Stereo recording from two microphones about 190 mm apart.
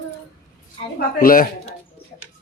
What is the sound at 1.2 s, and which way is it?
Speech, 50° left (ahead or behind).